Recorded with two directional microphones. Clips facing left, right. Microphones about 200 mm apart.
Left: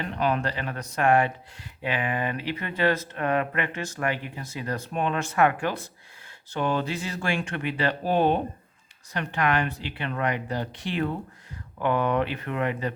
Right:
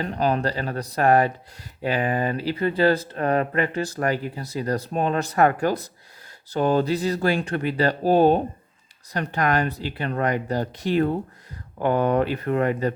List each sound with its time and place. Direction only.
0.0 s speech: 35° right (ahead or behind)